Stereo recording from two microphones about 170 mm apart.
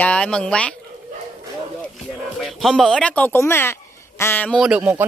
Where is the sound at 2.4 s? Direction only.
Centre (ahead or behind).